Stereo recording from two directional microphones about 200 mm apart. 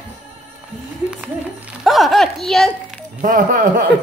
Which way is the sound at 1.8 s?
Centre (ahead or behind).